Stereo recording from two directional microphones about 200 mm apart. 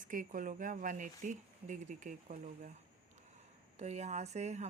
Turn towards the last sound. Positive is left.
turn(degrees=-35)  # may be behind; listen again after turning